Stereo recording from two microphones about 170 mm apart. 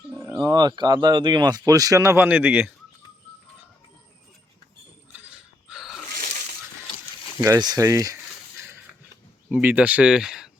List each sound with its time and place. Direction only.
0.2 s speech: 20° right (ahead or behind)
5.1 s mechanisms: 5° right (ahead or behind)
7.4 s speech: 20° right (ahead or behind)
9.5 s speech: 10° right (ahead or behind)